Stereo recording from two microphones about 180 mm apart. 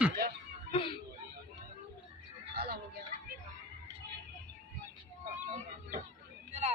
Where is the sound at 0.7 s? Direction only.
30° left (ahead or behind).